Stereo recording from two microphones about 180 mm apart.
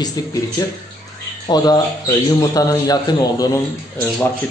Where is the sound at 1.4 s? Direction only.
20° left (ahead or behind).